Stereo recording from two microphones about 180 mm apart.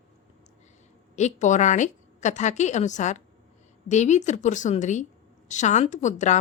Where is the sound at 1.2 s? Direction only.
40° left (ahead or behind).